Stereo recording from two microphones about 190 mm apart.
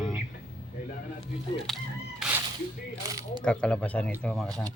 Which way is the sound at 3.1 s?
20° right (ahead or behind).